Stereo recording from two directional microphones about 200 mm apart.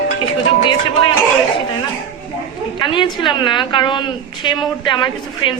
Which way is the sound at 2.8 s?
25° left (ahead or behind).